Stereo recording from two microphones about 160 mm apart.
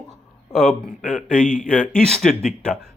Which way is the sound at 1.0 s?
55° left (ahead or behind).